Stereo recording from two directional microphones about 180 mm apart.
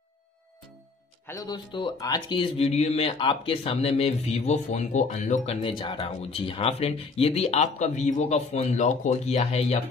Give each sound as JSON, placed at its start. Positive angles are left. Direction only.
{"t": 1.2, "sound": "speech", "side_deg": 20}